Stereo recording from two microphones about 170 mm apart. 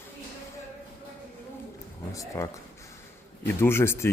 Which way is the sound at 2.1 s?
20° left (ahead or behind).